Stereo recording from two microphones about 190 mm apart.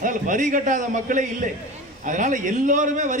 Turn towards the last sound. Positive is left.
turn(degrees=-40)  # may be behind; listen again after turning